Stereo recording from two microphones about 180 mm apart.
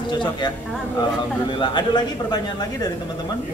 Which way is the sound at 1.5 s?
25° left (ahead or behind).